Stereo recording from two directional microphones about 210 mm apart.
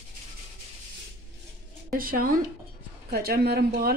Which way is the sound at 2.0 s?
45° right (ahead or behind).